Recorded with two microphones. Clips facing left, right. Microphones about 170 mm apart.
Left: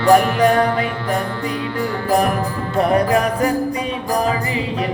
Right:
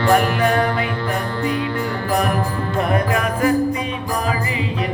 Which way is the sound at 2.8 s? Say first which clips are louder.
Left 5 dB; 35° left (ahead or behind).